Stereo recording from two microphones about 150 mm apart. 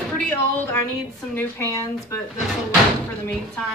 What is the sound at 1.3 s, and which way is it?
Speech, 15° left (ahead or behind).